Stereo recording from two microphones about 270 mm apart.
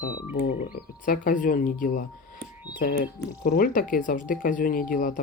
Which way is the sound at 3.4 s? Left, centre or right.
Left.